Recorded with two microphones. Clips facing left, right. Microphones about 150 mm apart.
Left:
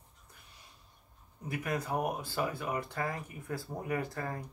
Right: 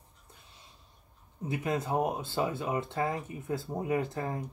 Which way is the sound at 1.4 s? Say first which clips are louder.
Right 4 dB; 25° right (ahead or behind).